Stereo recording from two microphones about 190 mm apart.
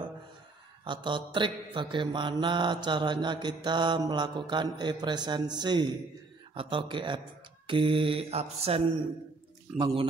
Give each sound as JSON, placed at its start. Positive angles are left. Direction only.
{"t": 0.8, "sound": "mantra", "side_deg": -25}